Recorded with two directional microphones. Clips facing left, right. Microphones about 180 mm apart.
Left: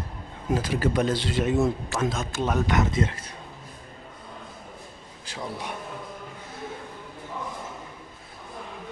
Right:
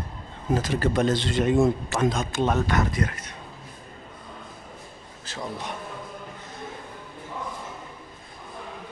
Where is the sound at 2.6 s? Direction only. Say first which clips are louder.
Left 1 dB; 20° left (ahead or behind).